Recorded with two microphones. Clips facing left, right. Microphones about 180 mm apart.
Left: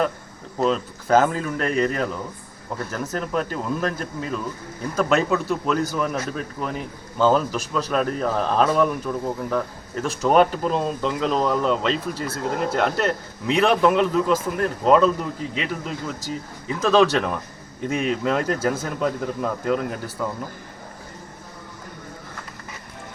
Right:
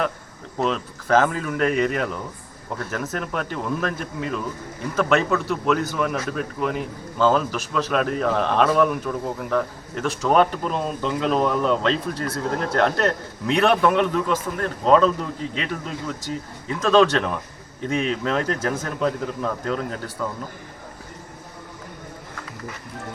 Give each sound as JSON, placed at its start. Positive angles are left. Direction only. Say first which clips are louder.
{"t": 0.6, "sound": "speech", "louder": "left 2 dB", "side_deg": 0}